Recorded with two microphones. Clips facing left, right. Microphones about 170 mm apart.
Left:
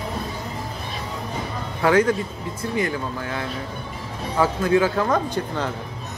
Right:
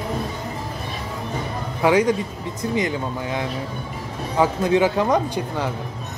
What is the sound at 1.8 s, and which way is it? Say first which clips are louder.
Speech: right 1 dB; 15° right (ahead or behind).